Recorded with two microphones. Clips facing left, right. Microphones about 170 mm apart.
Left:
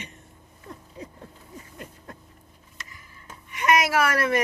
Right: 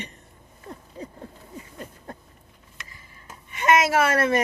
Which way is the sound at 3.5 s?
25° right (ahead or behind).